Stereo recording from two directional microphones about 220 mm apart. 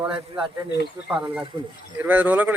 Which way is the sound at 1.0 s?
5° right (ahead or behind).